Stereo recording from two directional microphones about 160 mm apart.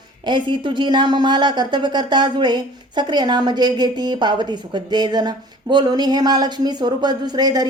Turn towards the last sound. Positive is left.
turn(degrees=-25)  # may be behind; listen again after turning